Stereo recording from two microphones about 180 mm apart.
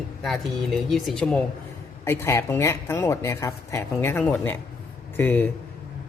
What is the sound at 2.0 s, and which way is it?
Speech, 15° left (ahead or behind).